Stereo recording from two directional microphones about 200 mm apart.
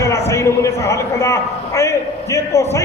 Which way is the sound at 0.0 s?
15° left (ahead or behind).